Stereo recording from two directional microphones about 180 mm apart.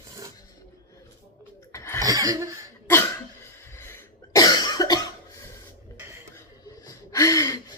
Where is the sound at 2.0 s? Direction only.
20° right (ahead or behind).